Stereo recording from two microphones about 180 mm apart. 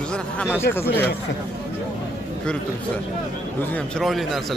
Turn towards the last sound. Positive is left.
turn(degrees=0)  # may be behind; listen again after turning